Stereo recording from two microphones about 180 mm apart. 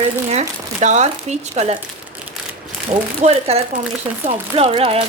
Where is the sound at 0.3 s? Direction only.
40° right (ahead or behind).